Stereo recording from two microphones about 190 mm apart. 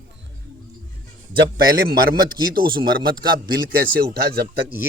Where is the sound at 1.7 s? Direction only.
50° right (ahead or behind).